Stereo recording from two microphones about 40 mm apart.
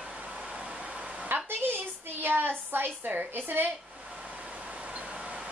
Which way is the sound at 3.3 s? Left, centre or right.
Right.